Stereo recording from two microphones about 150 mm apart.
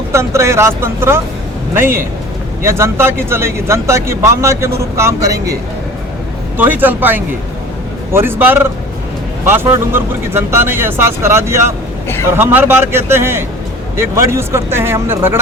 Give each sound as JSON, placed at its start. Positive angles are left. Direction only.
{"t": 0.1, "sound": "speech", "side_deg": -20}
{"t": 6.6, "sound": "speech", "side_deg": -10}